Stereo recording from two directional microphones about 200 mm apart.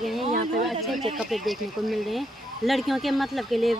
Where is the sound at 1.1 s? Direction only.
Centre (ahead or behind).